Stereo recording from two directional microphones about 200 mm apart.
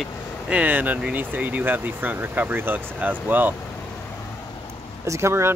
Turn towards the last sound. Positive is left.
turn(degrees=-15)  # may be behind; listen again after turning